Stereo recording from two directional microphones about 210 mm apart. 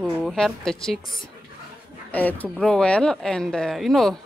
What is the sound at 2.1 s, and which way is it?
Speech, 5° left (ahead or behind).